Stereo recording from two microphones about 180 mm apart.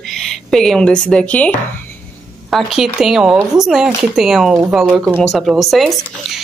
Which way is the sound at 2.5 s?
Centre (ahead or behind).